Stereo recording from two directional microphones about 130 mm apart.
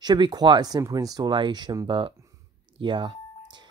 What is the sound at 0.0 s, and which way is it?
Speech, 35° right (ahead or behind).